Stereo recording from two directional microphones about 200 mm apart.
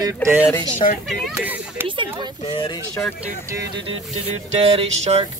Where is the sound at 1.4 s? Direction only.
10° right (ahead or behind).